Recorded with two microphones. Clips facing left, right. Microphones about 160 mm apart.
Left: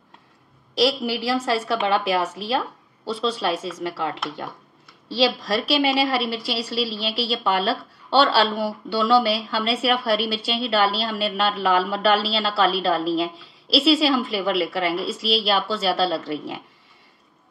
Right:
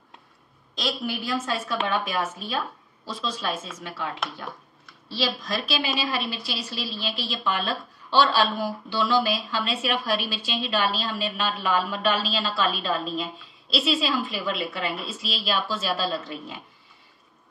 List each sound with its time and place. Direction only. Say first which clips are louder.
0.7 s a woman's voice: left 8 dB; 90° left